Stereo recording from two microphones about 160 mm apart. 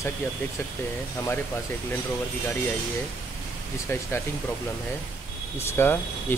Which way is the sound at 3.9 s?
15° left (ahead or behind).